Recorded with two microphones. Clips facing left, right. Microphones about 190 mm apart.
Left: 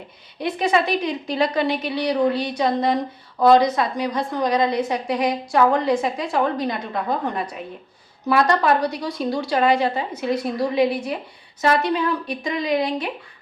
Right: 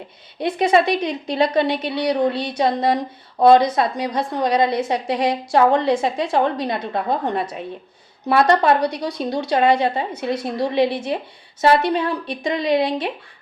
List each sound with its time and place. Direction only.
0.3 s a woman's voice: 25° right (ahead or behind)